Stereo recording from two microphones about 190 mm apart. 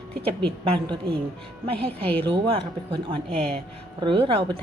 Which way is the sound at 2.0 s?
10° left (ahead or behind).